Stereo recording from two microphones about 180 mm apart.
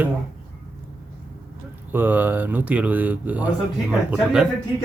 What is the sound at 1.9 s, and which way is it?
Speech, 10° right (ahead or behind).